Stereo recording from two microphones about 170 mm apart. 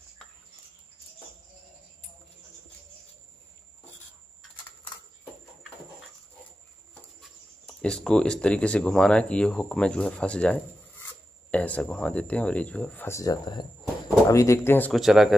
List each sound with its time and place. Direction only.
6.9 s speech: 5° left (ahead or behind)
14.9 s speech: centre (ahead or behind)